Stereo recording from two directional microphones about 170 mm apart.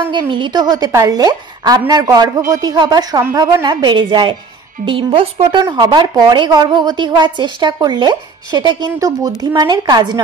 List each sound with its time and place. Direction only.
0.1 s a woman's voice: 30° right (ahead or behind)
3.6 s a woman's voice: 25° right (ahead or behind)
5.6 s a woman's voice: 20° right (ahead or behind)